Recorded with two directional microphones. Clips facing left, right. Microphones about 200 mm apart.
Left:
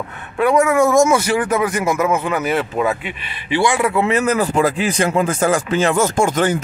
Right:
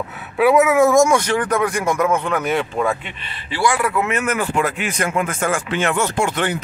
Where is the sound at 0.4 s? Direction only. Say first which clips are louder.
Right 1 dB; 5° right (ahead or behind).